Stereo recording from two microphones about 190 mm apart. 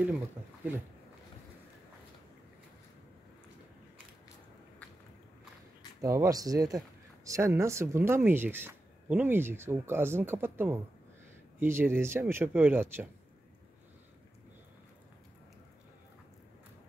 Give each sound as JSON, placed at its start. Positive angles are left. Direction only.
{"t": 5.9, "sound": "speech", "side_deg": -15}